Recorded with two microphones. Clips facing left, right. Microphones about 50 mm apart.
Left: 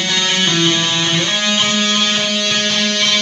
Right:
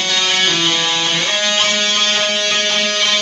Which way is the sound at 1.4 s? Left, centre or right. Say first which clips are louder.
Even; centre.